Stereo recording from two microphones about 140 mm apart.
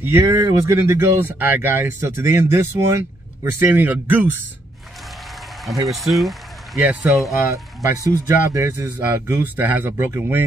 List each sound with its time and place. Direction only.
0.0 s speech: 20° right (ahead or behind)
5.9 s speech: centre (ahead or behind)
7.4 s speech: 20° right (ahead or behind)